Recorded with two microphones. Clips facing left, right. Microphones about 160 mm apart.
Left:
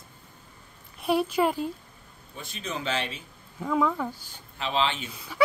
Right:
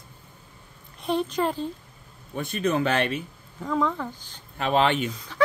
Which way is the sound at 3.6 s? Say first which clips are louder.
Even; 5° left (ahead or behind).